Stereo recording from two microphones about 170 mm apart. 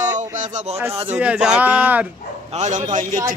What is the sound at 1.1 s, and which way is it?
Speech, 5° right (ahead or behind).